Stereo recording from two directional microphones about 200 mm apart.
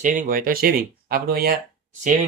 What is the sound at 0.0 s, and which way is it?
Speech, 45° right (ahead or behind).